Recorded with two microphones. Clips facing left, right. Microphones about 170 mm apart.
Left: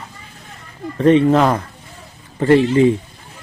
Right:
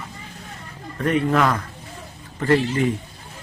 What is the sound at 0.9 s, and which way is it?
Speech, 25° left (ahead or behind).